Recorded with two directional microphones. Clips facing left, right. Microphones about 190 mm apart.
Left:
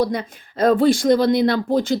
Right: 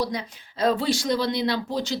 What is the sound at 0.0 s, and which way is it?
Speech, 55° left (ahead or behind).